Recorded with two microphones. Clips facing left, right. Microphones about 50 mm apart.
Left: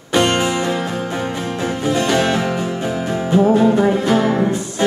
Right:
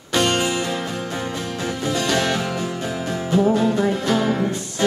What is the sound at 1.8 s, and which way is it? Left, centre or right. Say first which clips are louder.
Music: left 4 dB; left.